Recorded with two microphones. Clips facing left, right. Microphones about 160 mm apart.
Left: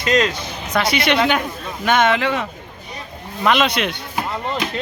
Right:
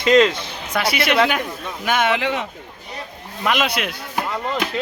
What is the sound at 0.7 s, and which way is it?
Speech, 5° right (ahead or behind).